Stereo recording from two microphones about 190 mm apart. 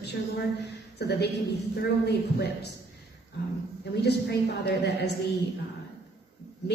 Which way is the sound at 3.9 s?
60° left (ahead or behind).